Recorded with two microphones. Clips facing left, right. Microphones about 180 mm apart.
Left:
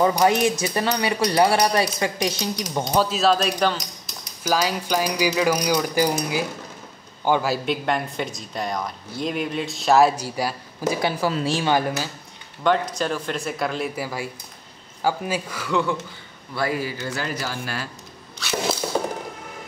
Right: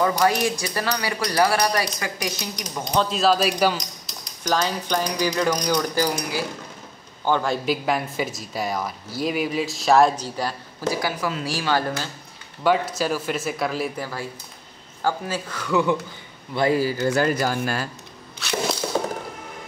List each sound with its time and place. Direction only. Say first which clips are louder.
0.0 s speech: left 2 dB; 20° left (ahead or behind)
2.9 s speech: even; 5° left (ahead or behind)
4.4 s speech: left 1 dB; 5° left (ahead or behind)
6.0 s speech: left 2 dB; 25° left (ahead or behind)
7.2 s speech: left 1 dB; 10° left (ahead or behind)
11.0 s speech: left 3 dB; 25° left (ahead or behind)
12.6 s speech: even; 5° right (ahead or behind)
13.9 s speech: left 1 dB; 10° left (ahead or behind)
16.5 s speech: right 5 dB; 25° right (ahead or behind)
16.8 s speech: right 8 dB; 45° right (ahead or behind)